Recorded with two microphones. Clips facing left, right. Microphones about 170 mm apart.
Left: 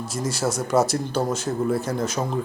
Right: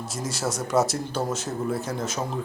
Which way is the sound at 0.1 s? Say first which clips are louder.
Left 4 dB; centre (ahead or behind).